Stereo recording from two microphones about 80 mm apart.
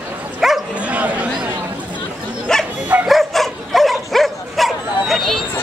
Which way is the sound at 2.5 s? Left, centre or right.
Centre.